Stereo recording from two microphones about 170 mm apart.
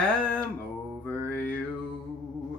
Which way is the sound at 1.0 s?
10° left (ahead or behind).